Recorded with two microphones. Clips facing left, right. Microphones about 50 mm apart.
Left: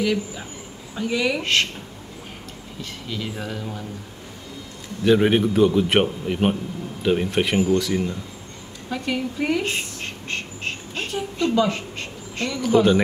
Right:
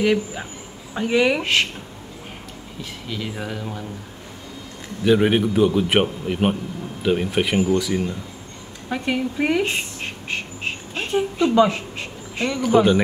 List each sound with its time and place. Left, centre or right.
0.0 s speech: right
1.4 s speech: centre
2.8 s speech: centre
5.0 s a man's voice: centre
8.8 s speech: right
9.6 s a sound: centre
11.4 s speech: centre
11.7 s a sound: centre
12.7 s speech: right